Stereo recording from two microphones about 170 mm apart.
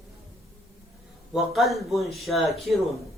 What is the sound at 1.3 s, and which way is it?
Speech, centre (ahead or behind).